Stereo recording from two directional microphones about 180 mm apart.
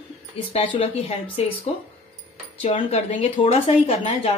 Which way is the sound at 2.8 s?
35° left (ahead or behind).